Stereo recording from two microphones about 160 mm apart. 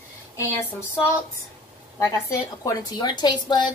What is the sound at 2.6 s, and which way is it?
A woman's voice, 25° left (ahead or behind).